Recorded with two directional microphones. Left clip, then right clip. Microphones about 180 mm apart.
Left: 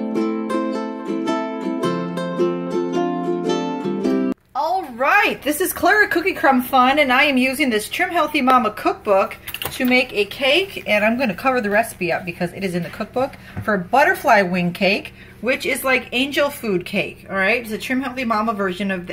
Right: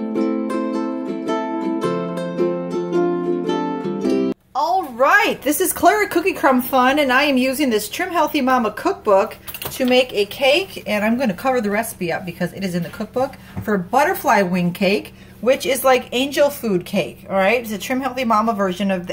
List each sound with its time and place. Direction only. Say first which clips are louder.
0.0 s music: right 1 dB; centre (ahead or behind)
3.5 s music: right 1 dB; 20° left (ahead or behind)
3.8 s a woman's voice: right 1 dB; centre (ahead or behind)